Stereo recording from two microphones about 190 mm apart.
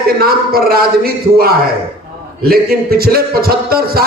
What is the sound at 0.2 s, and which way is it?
Speech, 50° right (ahead or behind).